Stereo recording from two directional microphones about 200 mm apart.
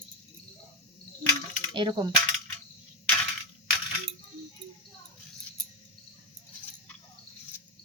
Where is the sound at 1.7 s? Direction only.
25° right (ahead or behind).